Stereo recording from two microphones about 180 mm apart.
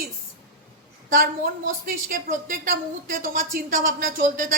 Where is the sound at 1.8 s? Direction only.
50° right (ahead or behind).